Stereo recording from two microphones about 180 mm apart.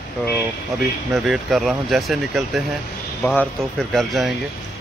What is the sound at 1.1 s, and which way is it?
Speech, centre (ahead or behind).